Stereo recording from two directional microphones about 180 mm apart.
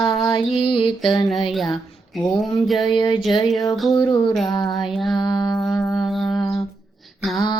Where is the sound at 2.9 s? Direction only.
25° left (ahead or behind).